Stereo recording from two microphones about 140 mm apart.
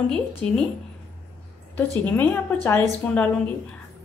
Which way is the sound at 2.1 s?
15° left (ahead or behind).